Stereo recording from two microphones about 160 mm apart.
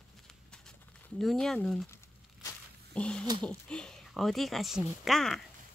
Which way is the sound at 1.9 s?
20° left (ahead or behind).